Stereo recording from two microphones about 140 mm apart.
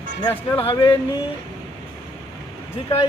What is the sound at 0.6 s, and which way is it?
Speech, 40° left (ahead or behind).